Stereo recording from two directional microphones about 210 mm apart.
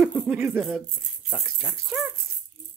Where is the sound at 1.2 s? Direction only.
5° right (ahead or behind).